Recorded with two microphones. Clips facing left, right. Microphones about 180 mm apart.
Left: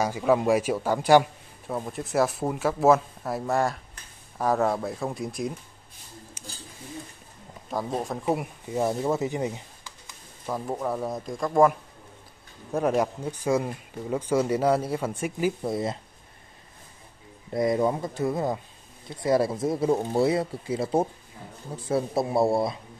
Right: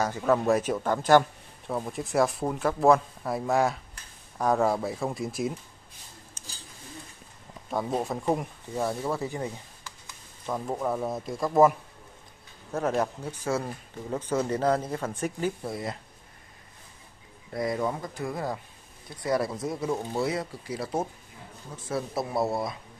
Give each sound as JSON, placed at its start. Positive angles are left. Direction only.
{"t": 0.0, "sound": "speech", "side_deg": 10}
{"t": 1.7, "sound": "speech", "side_deg": 0}
{"t": 6.4, "sound": "a sound", "side_deg": 10}
{"t": 7.7, "sound": "speech", "side_deg": 0}
{"t": 8.7, "sound": "speech", "side_deg": 20}
{"t": 10.4, "sound": "speech", "side_deg": 5}
{"t": 12.7, "sound": "speech", "side_deg": 15}
{"t": 15.6, "sound": "speech", "side_deg": 25}
{"t": 17.5, "sound": "speech", "side_deg": 25}